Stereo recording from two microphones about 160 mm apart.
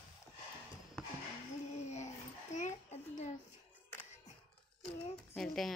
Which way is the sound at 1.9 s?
45° left (ahead or behind).